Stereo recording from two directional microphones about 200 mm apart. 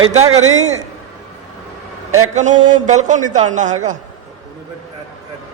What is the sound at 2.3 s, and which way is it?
A man's voice, 35° right (ahead or behind).